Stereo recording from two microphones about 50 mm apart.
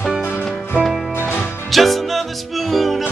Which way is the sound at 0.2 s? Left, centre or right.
Left.